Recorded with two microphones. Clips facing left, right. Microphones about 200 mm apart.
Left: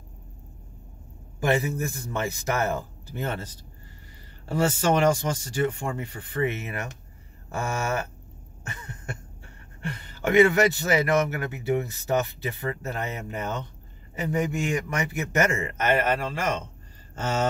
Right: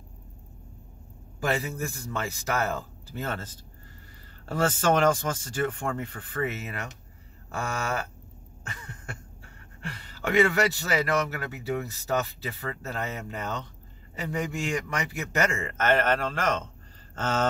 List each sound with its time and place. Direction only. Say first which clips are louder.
1.5 s speech: left 5 dB; 20° left (ahead or behind)
9.8 s a man's voice: left 4 dB; 20° left (ahead or behind)